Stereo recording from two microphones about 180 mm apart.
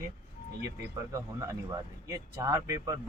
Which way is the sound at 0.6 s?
20° right (ahead or behind).